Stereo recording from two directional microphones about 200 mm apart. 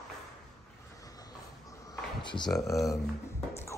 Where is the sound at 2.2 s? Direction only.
25° left (ahead or behind).